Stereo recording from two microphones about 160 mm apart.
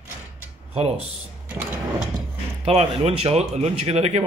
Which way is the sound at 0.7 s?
40° right (ahead or behind).